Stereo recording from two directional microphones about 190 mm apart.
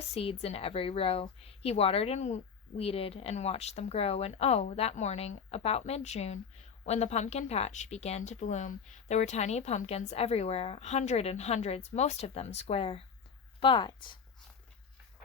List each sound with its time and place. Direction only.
0.1 s a woman's voice: 30° left (ahead or behind)